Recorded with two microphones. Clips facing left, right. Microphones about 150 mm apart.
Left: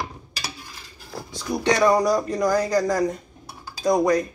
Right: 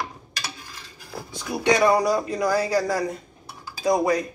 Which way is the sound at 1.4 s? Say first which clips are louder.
Even; 15° right (ahead or behind).